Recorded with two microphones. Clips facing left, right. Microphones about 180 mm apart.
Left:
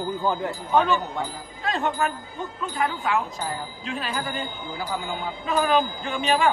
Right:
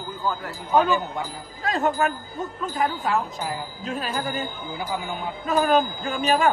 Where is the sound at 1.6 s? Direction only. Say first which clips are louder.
Right 2 dB; 40° right (ahead or behind).